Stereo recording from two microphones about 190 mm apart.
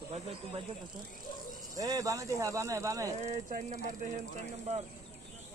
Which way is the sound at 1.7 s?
20° right (ahead or behind).